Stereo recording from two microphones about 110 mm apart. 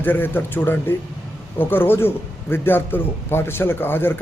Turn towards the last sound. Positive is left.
turn(degrees=20)  # may be behind; listen again after turning